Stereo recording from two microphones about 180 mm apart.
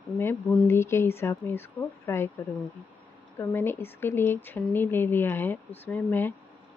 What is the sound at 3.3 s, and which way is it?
Speech, 10° left (ahead or behind).